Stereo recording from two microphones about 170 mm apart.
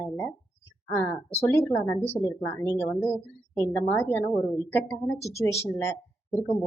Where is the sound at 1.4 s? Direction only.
15° left (ahead or behind).